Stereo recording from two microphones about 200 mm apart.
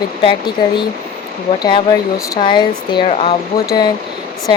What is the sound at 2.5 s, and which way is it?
Speech, 20° left (ahead or behind).